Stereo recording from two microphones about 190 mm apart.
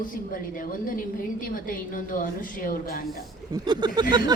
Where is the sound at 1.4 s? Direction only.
45° left (ahead or behind).